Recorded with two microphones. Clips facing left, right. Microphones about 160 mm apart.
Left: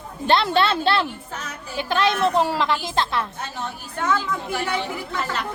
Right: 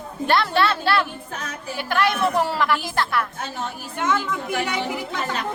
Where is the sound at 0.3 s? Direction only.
20° left (ahead or behind).